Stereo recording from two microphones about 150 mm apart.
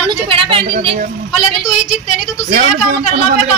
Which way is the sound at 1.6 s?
5° right (ahead or behind).